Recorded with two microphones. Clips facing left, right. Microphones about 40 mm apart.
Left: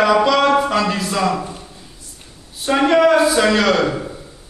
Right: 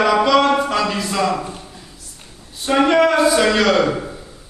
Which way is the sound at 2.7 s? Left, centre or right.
Centre.